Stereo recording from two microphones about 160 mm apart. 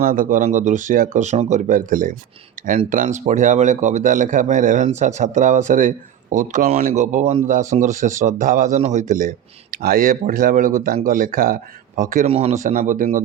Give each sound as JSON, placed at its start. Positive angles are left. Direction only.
{"t": 0.0, "sound": "speech", "side_deg": -60}
{"t": 9.7, "sound": "speech", "side_deg": -65}
{"t": 12.3, "sound": "speech", "side_deg": -40}